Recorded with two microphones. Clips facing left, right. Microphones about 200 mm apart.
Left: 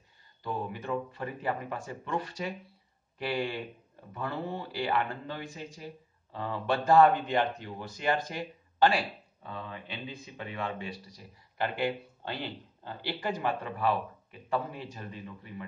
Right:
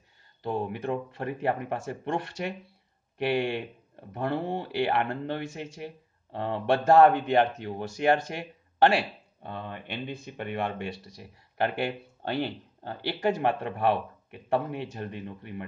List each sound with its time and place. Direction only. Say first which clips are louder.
0.4 s speech: right 5 dB; 65° right (ahead or behind)